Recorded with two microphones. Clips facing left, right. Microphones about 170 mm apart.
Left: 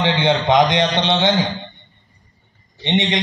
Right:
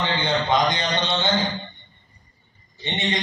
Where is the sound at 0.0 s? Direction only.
90° left.